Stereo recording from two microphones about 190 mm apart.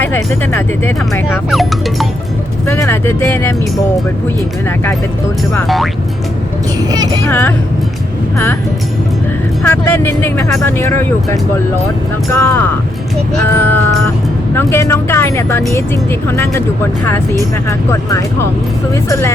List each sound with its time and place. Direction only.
0.0 s speech: 10° left (ahead or behind)
1.5 s speech: centre (ahead or behind)
2.6 s speech: 15° left (ahead or behind)
5.6 s speech: centre (ahead or behind)
6.7 s speech: 20° right (ahead or behind)
7.3 s speech: 10° left (ahead or behind)
9.6 s speech: 10° left (ahead or behind)